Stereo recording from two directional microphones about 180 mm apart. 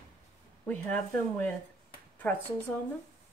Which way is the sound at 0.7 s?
10° left (ahead or behind).